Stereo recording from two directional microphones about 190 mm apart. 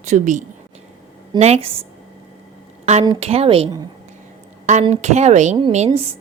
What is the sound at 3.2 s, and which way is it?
Speech, 30° right (ahead or behind).